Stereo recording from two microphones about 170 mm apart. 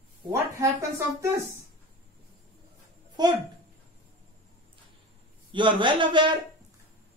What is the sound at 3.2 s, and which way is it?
Speech, 25° right (ahead or behind).